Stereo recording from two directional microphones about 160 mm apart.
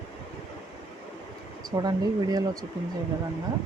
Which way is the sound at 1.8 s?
25° right (ahead or behind).